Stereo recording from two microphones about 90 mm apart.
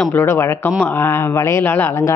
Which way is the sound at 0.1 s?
30° left (ahead or behind).